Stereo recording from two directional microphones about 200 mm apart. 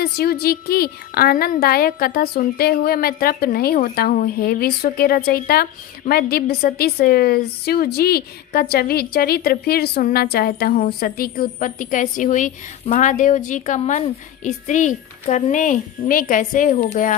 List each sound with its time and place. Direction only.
0.0 s a woman's voice: 50° left (ahead or behind)